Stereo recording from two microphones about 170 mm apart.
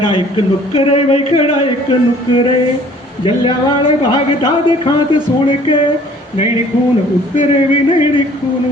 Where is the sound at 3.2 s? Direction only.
30° left (ahead or behind).